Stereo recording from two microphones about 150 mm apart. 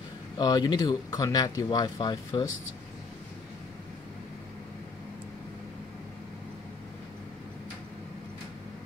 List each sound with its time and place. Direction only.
0.4 s speech: 25° left (ahead or behind)